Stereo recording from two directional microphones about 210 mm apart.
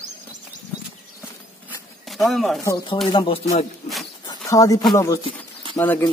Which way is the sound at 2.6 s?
20° left (ahead or behind).